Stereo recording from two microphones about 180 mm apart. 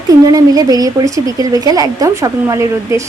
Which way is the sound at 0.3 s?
20° right (ahead or behind).